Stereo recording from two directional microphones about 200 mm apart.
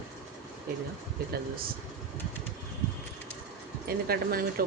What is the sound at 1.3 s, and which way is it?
Speech, 50° right (ahead or behind).